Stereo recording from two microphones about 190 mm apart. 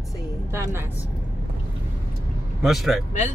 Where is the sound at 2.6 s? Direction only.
Centre (ahead or behind).